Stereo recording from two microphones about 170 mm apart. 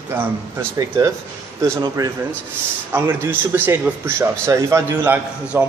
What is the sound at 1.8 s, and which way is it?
A man's voice, 20° right (ahead or behind).